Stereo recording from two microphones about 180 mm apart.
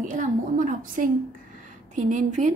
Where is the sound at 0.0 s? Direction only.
45° right (ahead or behind).